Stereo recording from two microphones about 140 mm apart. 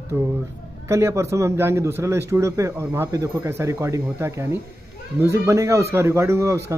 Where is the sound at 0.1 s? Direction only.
15° right (ahead or behind).